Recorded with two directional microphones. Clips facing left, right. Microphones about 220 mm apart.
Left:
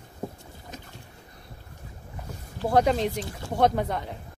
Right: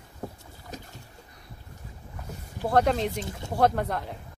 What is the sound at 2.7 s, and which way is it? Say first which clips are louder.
Speech: left 1 dB; centre (ahead or behind).